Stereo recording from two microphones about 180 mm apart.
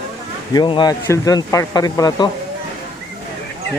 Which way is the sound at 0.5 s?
25° left (ahead or behind).